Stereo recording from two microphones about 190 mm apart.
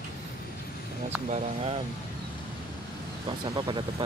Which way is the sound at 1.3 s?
30° right (ahead or behind).